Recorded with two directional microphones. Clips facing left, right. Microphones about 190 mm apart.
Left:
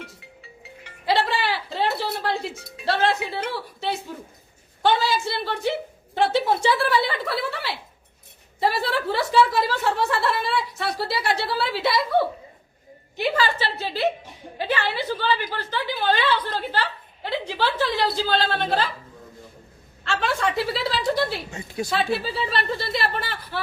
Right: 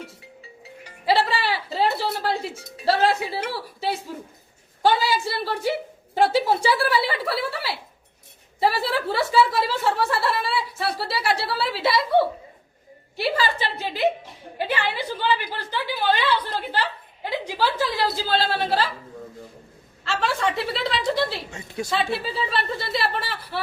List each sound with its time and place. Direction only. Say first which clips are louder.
1.0 s a sound: right 1 dB; 5° right (ahead or behind)
3.1 s a woman's voice: right 1 dB; 10° right (ahead or behind)
4.8 s a woman's voice: right 1 dB; 10° right (ahead or behind)
8.8 s speech: even; centre (ahead or behind)
13.1 s a woman's voice: left 1 dB; 35° right (ahead or behind)
13.6 s a woman's voice: right 1 dB; 15° right (ahead or behind)
20.1 s speech: even; centre (ahead or behind)